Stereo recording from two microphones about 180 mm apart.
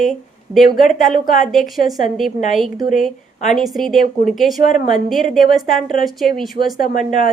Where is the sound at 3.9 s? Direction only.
50° left (ahead or behind).